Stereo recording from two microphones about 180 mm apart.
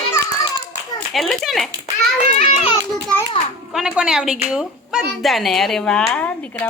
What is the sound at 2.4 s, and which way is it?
Speech, 40° left (ahead or behind).